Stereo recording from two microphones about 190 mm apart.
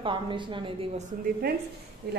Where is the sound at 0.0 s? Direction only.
25° right (ahead or behind).